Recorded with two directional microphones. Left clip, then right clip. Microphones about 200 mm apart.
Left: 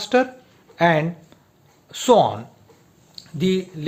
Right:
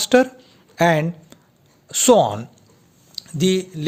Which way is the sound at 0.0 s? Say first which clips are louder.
Right 3 dB; 35° right (ahead or behind).